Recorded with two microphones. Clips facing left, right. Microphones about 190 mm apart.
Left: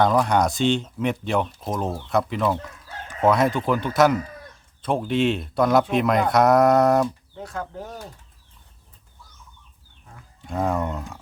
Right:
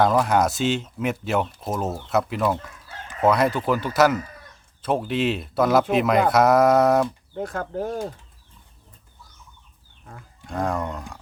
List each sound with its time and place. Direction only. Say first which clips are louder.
0.0 s speech: even; 5° right (ahead or behind)
7.3 s speech: right 5 dB; 55° right (ahead or behind)
10.4 s speech: left 2 dB; centre (ahead or behind)